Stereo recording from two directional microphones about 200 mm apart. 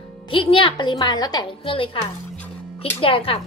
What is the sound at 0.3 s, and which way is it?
A woman's voice, 25° left (ahead or behind).